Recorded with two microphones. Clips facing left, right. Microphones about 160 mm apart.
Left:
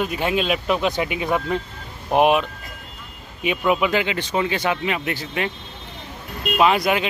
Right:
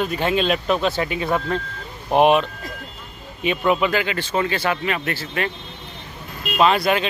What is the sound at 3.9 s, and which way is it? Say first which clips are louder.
Speech: even; 20° left (ahead or behind).